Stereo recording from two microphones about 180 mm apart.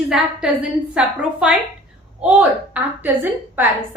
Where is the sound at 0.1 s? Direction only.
5° right (ahead or behind).